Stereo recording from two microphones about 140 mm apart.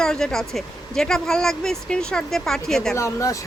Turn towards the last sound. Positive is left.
turn(degrees=20)  # may be behind; listen again after turning